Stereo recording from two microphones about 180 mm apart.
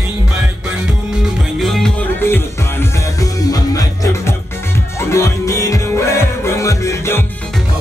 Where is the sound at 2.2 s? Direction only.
10° left (ahead or behind).